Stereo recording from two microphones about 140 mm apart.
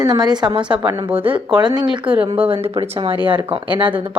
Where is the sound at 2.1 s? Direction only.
40° right (ahead or behind).